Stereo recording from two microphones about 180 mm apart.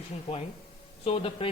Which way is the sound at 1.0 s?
30° left (ahead or behind).